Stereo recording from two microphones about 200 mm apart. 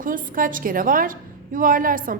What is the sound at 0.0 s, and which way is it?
Speech, 45° right (ahead or behind).